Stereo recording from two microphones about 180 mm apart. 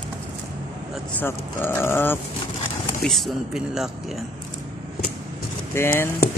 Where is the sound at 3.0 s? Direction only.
Centre (ahead or behind).